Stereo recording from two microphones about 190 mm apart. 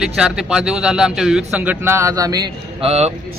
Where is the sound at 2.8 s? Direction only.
35° right (ahead or behind).